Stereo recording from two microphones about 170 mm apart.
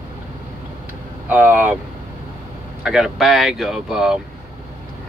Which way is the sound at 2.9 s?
5° right (ahead or behind).